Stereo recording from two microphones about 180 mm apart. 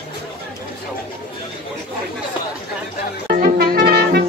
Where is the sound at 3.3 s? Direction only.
60° right (ahead or behind).